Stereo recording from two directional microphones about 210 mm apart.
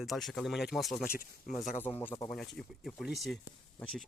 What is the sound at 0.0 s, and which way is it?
Speech, centre (ahead or behind).